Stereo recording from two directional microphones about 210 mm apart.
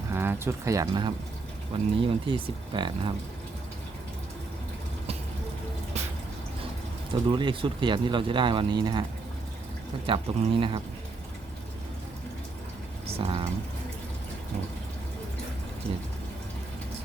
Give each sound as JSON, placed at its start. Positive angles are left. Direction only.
{"t": 0.1, "sound": "speech", "side_deg": -10}
{"t": 7.1, "sound": "speech", "side_deg": -20}
{"t": 10.1, "sound": "speech", "side_deg": -25}
{"t": 13.1, "sound": "speech", "side_deg": -25}